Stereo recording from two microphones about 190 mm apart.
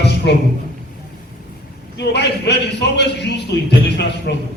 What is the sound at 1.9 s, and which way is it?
A man's voice, 60° left (ahead or behind).